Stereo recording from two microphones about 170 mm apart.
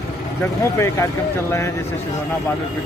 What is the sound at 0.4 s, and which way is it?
Speech, 15° left (ahead or behind).